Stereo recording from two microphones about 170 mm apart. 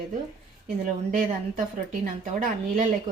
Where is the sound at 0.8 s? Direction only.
45° right (ahead or behind).